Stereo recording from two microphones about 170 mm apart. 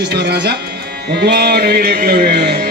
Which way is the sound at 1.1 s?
75° right (ahead or behind).